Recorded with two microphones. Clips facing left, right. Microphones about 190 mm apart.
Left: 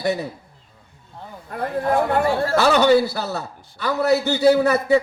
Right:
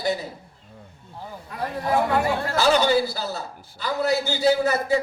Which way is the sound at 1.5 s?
55° left (ahead or behind).